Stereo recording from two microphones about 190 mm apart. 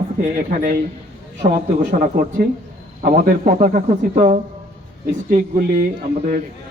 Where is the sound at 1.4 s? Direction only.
60° right (ahead or behind).